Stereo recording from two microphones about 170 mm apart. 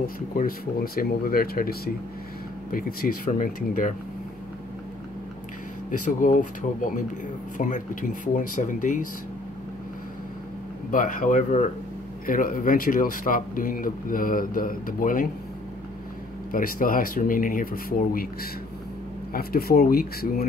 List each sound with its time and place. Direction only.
0.0 s speech: 55° left (ahead or behind)
5.9 s speech: 50° left (ahead or behind)
10.9 s speech: 50° left (ahead or behind)
16.5 s speech: 55° left (ahead or behind)